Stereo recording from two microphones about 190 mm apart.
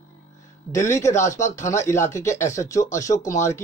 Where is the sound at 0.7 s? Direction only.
15° left (ahead or behind).